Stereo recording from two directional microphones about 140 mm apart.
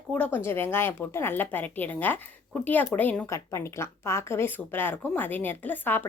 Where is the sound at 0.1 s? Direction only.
10° left (ahead or behind).